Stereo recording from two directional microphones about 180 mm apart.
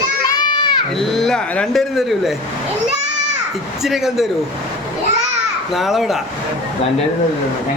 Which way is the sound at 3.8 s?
Centre (ahead or behind).